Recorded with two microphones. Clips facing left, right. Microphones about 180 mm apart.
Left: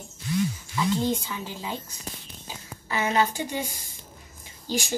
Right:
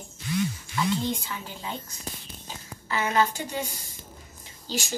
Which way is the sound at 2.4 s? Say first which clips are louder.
Left 1 dB; 15° left (ahead or behind).